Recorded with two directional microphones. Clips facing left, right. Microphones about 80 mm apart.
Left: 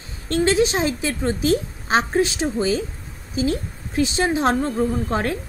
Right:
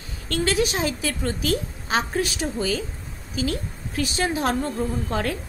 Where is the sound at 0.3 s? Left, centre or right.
Left.